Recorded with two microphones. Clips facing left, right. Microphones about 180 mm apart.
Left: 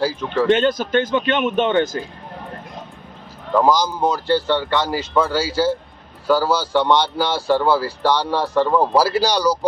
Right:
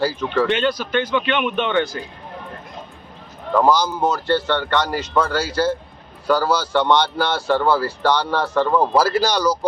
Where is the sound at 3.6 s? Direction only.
10° left (ahead or behind).